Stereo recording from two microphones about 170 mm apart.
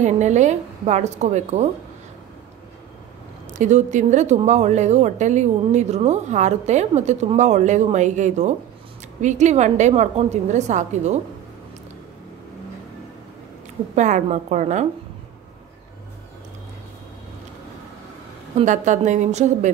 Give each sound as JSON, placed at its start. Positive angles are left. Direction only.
{"t": 0.0, "sound": "speech", "side_deg": -45}
{"t": 3.5, "sound": "speech", "side_deg": -45}
{"t": 13.9, "sound": "speech", "side_deg": -45}
{"t": 18.6, "sound": "speech", "side_deg": -45}